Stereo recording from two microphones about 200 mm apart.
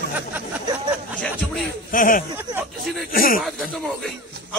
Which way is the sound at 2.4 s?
10° right (ahead or behind).